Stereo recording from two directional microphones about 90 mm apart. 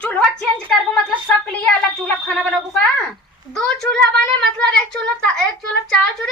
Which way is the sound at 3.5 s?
5° left (ahead or behind).